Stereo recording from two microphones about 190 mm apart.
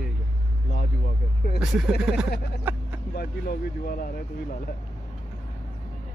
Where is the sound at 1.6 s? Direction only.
5° right (ahead or behind).